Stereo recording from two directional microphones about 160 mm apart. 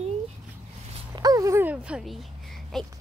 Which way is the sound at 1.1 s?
25° right (ahead or behind).